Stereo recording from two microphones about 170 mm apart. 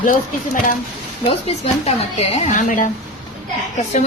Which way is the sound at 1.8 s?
40° left (ahead or behind).